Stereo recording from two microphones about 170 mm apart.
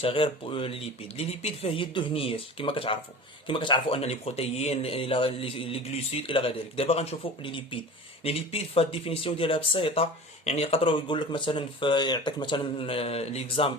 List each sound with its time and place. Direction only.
0.0 s speech: 30° left (ahead or behind)